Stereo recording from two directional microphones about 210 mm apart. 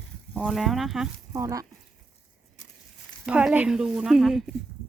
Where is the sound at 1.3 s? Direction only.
15° right (ahead or behind).